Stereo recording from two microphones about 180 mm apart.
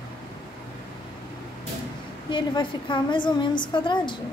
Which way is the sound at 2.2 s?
25° left (ahead or behind).